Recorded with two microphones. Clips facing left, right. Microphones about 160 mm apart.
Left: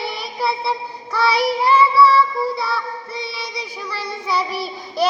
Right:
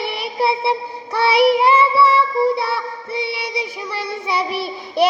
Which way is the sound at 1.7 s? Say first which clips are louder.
Left 1 dB; 25° right (ahead or behind).